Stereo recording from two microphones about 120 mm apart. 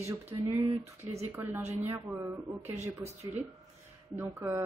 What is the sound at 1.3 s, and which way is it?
A woman's voice, 20° right (ahead or behind).